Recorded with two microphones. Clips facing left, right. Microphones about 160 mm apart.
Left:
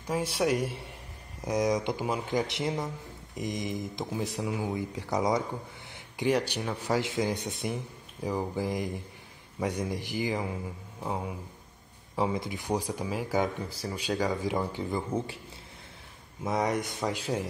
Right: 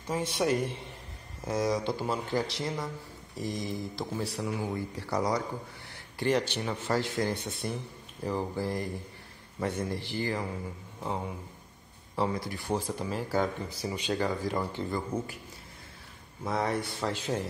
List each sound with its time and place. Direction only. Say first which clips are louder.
0.0 s speech: left 1 dB; 10° left (ahead or behind)
12.4 s speech: left 1 dB; 20° left (ahead or behind)
13.7 s speech: even; centre (ahead or behind)
16.4 s speech: left 2 dB; 15° left (ahead or behind)